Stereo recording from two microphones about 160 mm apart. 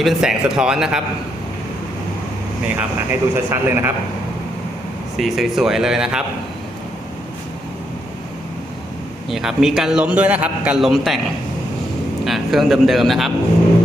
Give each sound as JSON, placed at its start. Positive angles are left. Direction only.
{"t": 0.0, "sound": "a man's voice", "side_deg": 0}
{"t": 2.7, "sound": "speech", "side_deg": -15}
{"t": 5.1, "sound": "a man's voice", "side_deg": 0}
{"t": 9.3, "sound": "a man's voice", "side_deg": 0}
{"t": 12.2, "sound": "a man's voice", "side_deg": 0}